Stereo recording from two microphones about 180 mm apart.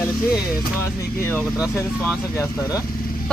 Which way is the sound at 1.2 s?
10° left (ahead or behind).